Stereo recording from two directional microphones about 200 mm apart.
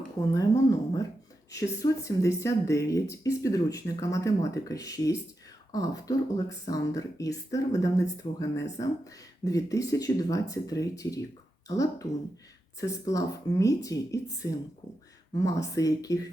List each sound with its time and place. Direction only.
0.3 s speech: 15° left (ahead or behind)